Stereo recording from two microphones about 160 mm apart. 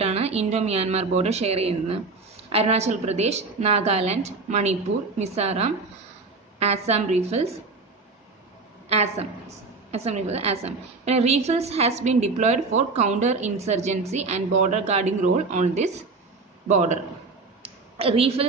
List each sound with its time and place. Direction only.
0.0 s a woman's voice: 40° right (ahead or behind)
8.8 s a woman's voice: 40° right (ahead or behind)
17.6 s a sound: 35° right (ahead or behind)